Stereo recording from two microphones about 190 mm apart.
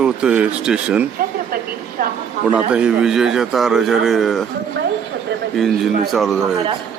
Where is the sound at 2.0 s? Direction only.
45° right (ahead or behind).